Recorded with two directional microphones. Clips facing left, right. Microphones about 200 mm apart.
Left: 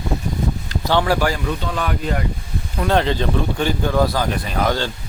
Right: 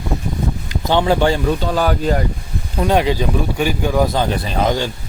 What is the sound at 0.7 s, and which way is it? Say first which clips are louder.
Speech: right 3 dB; 20° right (ahead or behind).